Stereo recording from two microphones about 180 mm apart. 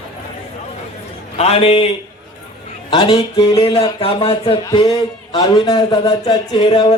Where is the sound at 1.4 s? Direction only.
35° left (ahead or behind).